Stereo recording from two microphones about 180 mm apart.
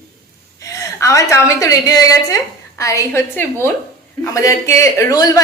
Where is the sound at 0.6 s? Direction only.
15° left (ahead or behind).